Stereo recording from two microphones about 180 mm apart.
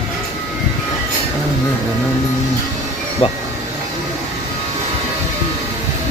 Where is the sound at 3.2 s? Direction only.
30° left (ahead or behind).